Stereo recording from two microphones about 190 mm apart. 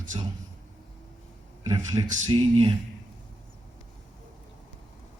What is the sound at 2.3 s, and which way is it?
Speech, 30° right (ahead or behind).